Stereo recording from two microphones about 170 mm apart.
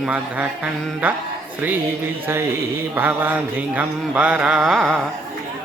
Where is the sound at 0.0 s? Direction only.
5° right (ahead or behind).